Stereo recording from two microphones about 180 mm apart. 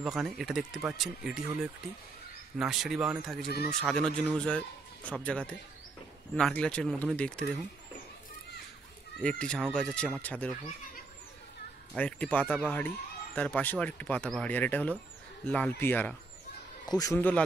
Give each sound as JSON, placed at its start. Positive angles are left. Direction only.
{"t": 0.0, "sound": "a man's voice", "side_deg": 0}
{"t": 9.2, "sound": "a man's voice", "side_deg": 5}
{"t": 11.9, "sound": "speech", "side_deg": 5}
{"t": 16.8, "sound": "speech", "side_deg": 20}